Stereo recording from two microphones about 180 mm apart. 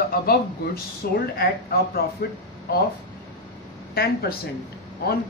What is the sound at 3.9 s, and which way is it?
Speech, 60° left (ahead or behind).